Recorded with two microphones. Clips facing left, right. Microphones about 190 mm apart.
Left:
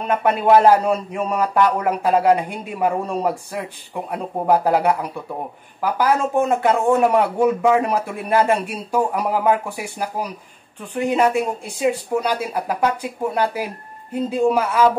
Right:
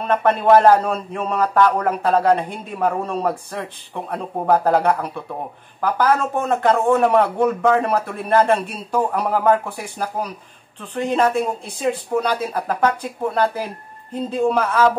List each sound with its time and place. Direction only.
0.0 s a man's voice: 10° left (ahead or behind)